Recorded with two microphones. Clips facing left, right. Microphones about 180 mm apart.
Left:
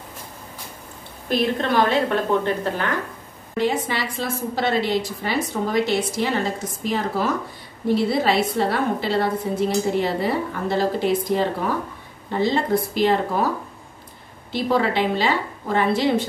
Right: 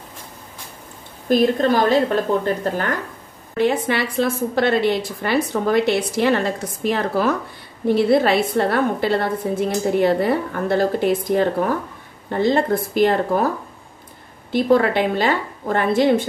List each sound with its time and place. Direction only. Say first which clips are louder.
1.3 s a woman's voice: right 5 dB; 45° right (ahead or behind)
3.5 s a woman's voice: right 4 dB; 60° right (ahead or behind)
14.5 s a woman's voice: right 5 dB; 50° right (ahead or behind)